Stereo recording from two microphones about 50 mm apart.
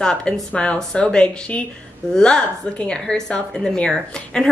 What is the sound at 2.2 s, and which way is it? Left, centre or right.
Speech, centre.